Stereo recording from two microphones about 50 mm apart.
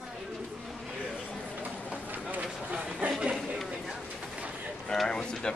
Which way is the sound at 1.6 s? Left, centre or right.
Right.